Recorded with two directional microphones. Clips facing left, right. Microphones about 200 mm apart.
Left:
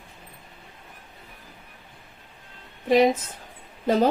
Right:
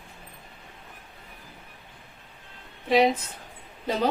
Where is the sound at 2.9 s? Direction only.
45° left (ahead or behind).